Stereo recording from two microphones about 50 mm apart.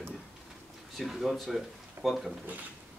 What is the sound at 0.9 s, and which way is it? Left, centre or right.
Speech, centre.